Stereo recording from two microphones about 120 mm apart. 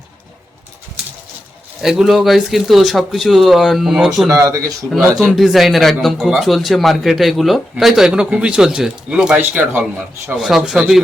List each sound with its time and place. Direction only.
1.8 s a man's voice: 5° right (ahead or behind)
4.3 s speech: 25° right (ahead or behind)
5.1 s a man's voice: centre (ahead or behind)
10.3 s a man's voice: 5° right (ahead or behind)